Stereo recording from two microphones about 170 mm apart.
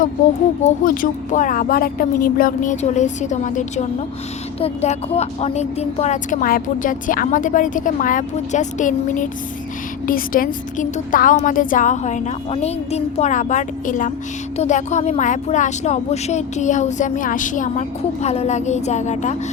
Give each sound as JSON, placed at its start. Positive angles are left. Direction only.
{"t": 0.6, "sound": "speech", "side_deg": 50}